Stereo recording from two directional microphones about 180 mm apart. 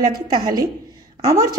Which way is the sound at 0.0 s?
20° right (ahead or behind).